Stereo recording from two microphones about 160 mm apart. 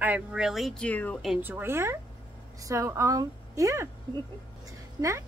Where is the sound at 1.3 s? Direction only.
10° right (ahead or behind).